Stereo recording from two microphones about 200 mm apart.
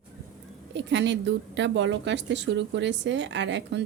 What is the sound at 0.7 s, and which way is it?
Speech, 60° right (ahead or behind).